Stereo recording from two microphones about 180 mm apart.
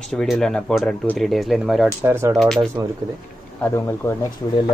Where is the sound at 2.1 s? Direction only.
15° right (ahead or behind).